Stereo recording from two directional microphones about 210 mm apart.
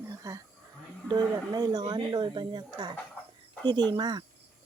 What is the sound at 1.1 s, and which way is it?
Speech, 20° right (ahead or behind).